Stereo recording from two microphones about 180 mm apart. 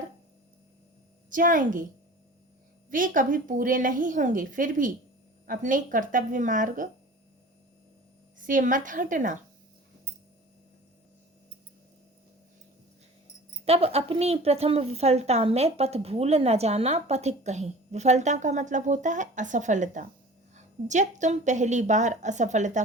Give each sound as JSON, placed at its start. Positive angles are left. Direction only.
{"t": 1.3, "sound": "a woman's voice", "side_deg": -50}
{"t": 2.9, "sound": "a woman's voice", "side_deg": -50}
{"t": 8.4, "sound": "a woman's voice", "side_deg": -45}
{"t": 13.7, "sound": "a woman's voice", "side_deg": -35}